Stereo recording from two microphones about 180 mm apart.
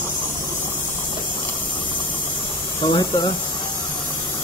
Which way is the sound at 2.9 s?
25° left (ahead or behind).